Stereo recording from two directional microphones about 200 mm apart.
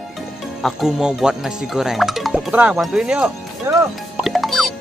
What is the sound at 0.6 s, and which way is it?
Speech, centre (ahead or behind).